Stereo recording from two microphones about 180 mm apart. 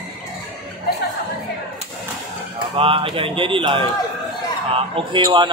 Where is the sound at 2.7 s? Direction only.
30° right (ahead or behind).